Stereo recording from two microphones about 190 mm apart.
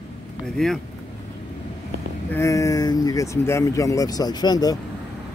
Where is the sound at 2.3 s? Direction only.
15° left (ahead or behind).